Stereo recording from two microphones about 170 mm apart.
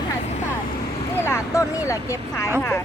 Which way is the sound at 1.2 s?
15° left (ahead or behind).